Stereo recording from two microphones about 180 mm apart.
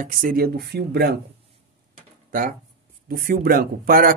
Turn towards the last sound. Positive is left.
turn(degrees=-55)  # may be behind; listen again after turning